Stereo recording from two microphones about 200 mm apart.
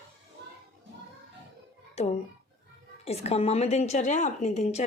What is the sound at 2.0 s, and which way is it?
Speech, 30° left (ahead or behind).